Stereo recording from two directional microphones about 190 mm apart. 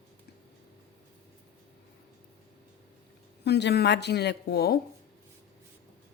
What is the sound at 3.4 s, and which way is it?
Speech, 60° left (ahead or behind).